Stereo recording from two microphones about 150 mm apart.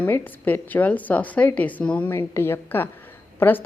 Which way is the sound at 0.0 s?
10° left (ahead or behind).